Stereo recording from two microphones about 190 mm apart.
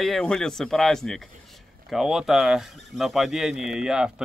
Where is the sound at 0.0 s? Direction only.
5° left (ahead or behind).